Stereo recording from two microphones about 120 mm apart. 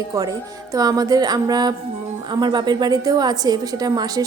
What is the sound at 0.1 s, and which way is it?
A woman's voice, 30° right (ahead or behind).